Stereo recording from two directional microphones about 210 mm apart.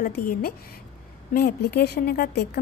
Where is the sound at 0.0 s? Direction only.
45° left (ahead or behind).